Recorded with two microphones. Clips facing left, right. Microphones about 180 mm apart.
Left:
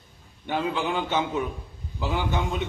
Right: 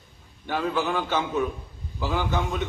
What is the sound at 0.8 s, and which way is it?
Speech, 20° left (ahead or behind).